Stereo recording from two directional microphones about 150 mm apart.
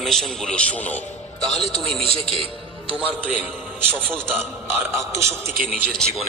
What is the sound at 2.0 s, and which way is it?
Speech, 35° right (ahead or behind).